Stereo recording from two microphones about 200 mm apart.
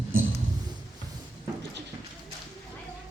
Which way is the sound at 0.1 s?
80° right.